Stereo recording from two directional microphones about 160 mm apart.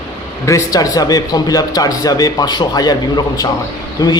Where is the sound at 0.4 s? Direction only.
20° left (ahead or behind).